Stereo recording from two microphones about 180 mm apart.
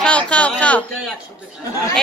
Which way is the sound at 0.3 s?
5° left (ahead or behind).